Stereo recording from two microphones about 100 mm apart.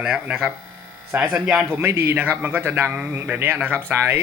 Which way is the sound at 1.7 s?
25° right (ahead or behind).